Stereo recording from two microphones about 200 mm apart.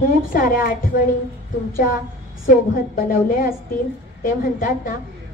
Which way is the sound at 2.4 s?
45° left (ahead or behind).